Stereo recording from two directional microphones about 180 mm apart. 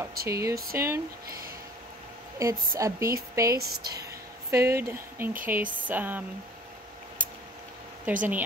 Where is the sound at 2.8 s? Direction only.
15° right (ahead or behind).